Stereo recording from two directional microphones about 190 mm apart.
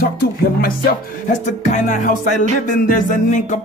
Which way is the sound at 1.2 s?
45° left (ahead or behind).